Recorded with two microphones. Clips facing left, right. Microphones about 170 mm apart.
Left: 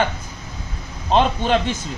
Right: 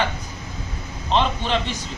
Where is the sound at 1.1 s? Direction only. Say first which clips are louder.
Left 4 dB; 50° left (ahead or behind).